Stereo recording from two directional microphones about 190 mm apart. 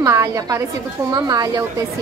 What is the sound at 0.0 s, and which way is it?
A woman's voice, 15° right (ahead or behind).